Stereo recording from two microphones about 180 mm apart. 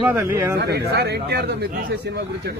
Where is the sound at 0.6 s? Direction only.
65° right (ahead or behind).